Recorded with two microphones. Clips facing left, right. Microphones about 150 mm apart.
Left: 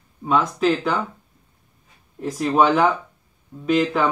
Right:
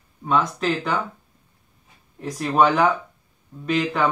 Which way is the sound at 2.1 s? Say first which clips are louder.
Left 1 dB; centre (ahead or behind).